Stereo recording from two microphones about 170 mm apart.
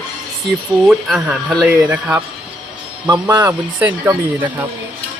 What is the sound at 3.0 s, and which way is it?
Speech, 25° right (ahead or behind).